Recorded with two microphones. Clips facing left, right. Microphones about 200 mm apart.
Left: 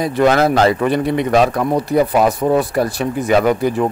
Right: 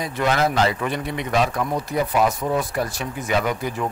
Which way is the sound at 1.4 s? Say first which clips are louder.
Left 7 dB; 65° left (ahead or behind).